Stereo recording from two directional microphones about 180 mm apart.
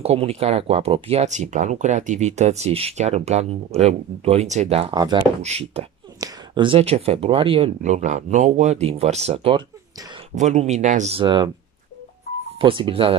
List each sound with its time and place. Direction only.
0.0 s speech: 35° right (ahead or behind)
5.4 s speech: 35° right (ahead or behind)
6.1 s speech: 20° right (ahead or behind)
12.5 s speech: 30° right (ahead or behind)